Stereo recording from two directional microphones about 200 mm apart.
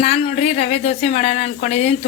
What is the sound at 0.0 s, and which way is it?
Speech, 30° left (ahead or behind).